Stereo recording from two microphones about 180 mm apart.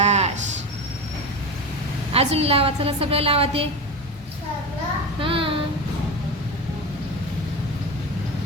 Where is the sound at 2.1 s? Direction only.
35° right (ahead or behind).